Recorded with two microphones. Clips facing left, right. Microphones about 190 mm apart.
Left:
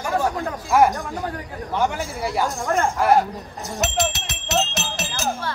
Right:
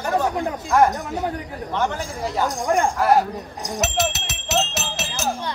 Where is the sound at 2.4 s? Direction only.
15° right (ahead or behind).